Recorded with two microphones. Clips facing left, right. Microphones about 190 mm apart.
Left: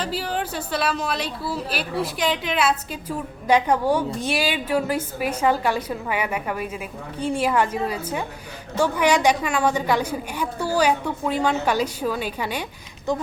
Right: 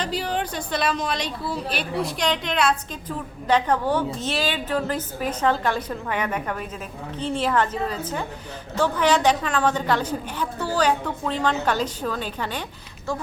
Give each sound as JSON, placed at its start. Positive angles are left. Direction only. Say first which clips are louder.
{"t": 0.0, "sound": "a woman's voice", "louder": "even", "side_deg": 5}